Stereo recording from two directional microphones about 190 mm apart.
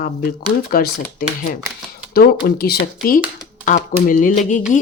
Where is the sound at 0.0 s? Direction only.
50° left (ahead or behind).